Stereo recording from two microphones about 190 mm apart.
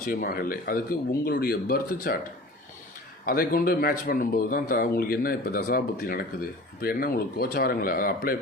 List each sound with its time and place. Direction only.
0.0 s speech: 50° left (ahead or behind)
3.2 s speech: 50° left (ahead or behind)